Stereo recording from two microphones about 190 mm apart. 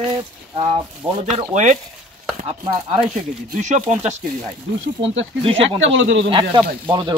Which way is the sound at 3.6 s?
40° right (ahead or behind).